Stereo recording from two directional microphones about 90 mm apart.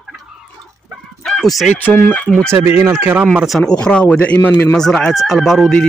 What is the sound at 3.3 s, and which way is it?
Speech, 5° right (ahead or behind).